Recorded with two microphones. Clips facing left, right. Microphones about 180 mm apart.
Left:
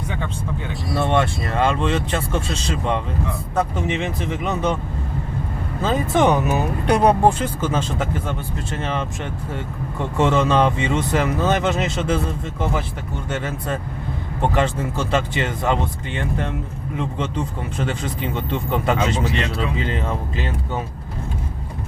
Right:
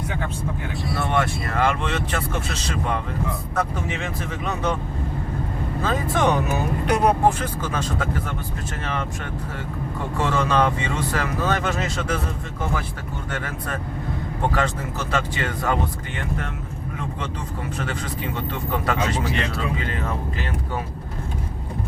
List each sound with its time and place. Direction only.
0.9 s speech: 25° left (ahead or behind)
5.8 s speech: 25° left (ahead or behind)
10.2 s speech: 25° left (ahead or behind)
13.3 s speech: 25° left (ahead or behind)